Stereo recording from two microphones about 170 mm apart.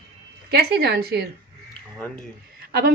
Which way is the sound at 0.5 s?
70° right (ahead or behind).